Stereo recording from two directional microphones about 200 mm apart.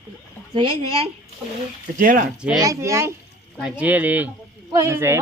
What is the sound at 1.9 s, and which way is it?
Speech, 45° right (ahead or behind).